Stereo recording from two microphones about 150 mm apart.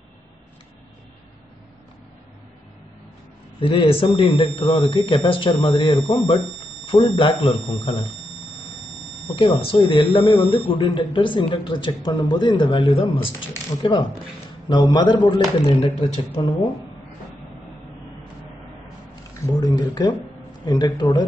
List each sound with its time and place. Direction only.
3.5 s speech: 35° left (ahead or behind)
9.3 s speech: 35° left (ahead or behind)
19.4 s speech: 30° left (ahead or behind)